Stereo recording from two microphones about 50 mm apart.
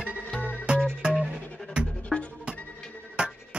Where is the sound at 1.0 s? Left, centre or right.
Centre.